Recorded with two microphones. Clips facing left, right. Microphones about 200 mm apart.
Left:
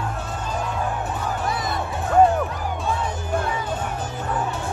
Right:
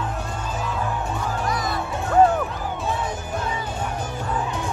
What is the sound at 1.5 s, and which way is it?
Music, 25° left (ahead or behind).